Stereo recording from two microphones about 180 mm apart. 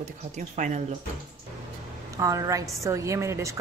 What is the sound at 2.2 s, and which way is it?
A woman's voice, 20° right (ahead or behind).